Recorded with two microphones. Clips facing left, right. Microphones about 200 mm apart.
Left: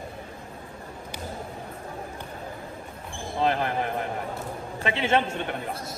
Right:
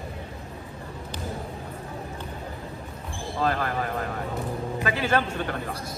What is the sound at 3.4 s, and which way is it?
A man's voice, 20° left (ahead or behind).